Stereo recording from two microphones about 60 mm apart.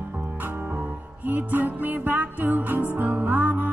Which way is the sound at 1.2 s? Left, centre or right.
Right.